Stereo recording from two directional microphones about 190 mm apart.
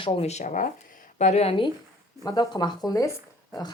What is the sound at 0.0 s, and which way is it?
Speech, 35° left (ahead or behind).